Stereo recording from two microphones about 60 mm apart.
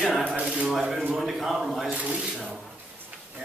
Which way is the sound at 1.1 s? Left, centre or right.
Centre.